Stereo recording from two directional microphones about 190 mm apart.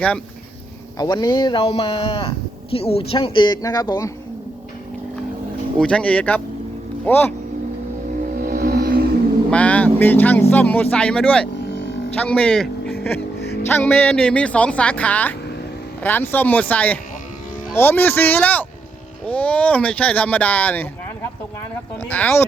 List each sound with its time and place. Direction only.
0.9 s speech: 20° left (ahead or behind)
5.8 s speech: 5° left (ahead or behind)
8.4 s vehicle: 50° right (ahead or behind)
9.5 s speech: 5° left (ahead or behind)
13.7 s speech: 10° left (ahead or behind)
22.1 s speech: 10° left (ahead or behind)